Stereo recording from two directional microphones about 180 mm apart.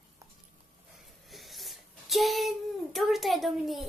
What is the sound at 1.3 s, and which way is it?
A child's voice, centre (ahead or behind).